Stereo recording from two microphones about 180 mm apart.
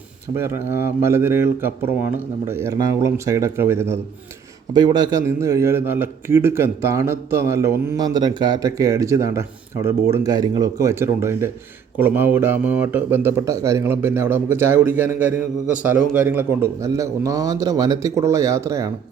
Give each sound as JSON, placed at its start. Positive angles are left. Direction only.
{"t": 0.3, "sound": "a man's voice", "side_deg": -15}